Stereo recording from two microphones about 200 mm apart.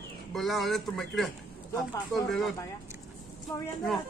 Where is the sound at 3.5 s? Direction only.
15° left (ahead or behind).